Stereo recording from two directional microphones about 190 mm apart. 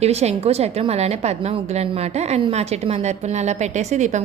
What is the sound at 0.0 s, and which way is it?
A woman's voice, 35° right (ahead or behind).